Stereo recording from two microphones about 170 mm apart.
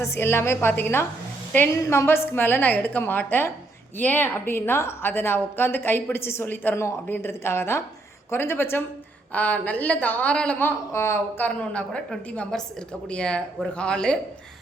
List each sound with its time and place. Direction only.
0.0 s a woman's voice: 15° left (ahead or behind)